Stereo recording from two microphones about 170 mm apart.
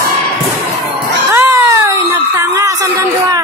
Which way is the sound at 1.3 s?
15° right (ahead or behind).